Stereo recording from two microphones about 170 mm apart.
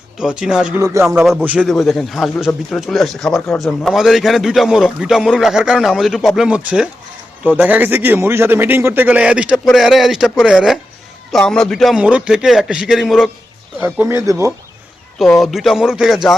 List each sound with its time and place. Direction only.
0.2 s speech: 5° right (ahead or behind)
0.8 s a man's voice: 15° right (ahead or behind)
1.2 s a man's voice: centre (ahead or behind)
13.7 s a man's voice: 10° right (ahead or behind)
15.2 s speech: centre (ahead or behind)